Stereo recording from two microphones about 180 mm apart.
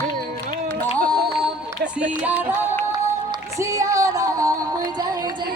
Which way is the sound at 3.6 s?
15° right (ahead or behind).